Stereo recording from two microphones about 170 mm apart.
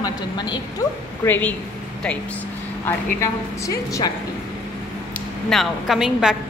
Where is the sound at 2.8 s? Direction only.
20° left (ahead or behind).